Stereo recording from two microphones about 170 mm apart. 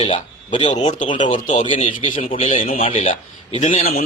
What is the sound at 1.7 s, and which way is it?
A man's voice, 30° left (ahead or behind).